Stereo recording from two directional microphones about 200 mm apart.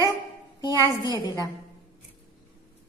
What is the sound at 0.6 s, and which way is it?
Speech, 20° left (ahead or behind).